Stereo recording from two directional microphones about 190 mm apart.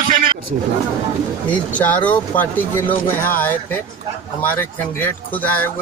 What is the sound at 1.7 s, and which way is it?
Speech, 10° left (ahead or behind).